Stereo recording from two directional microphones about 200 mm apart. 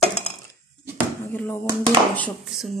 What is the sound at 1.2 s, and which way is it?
Speech, 10° left (ahead or behind).